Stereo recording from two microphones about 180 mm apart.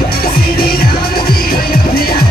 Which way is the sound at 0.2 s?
55° left (ahead or behind).